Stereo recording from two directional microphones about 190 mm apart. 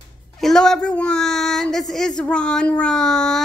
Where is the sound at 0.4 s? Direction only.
Centre (ahead or behind).